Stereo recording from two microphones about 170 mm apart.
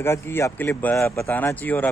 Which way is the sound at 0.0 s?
15° left (ahead or behind).